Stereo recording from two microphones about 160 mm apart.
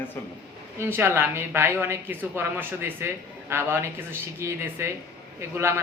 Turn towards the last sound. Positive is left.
turn(degrees=-15)  # may be behind; listen again after turning